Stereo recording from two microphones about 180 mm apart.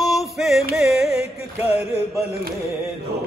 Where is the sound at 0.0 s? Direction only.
Centre (ahead or behind).